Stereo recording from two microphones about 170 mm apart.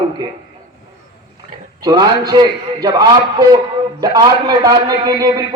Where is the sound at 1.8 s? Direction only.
20° right (ahead or behind).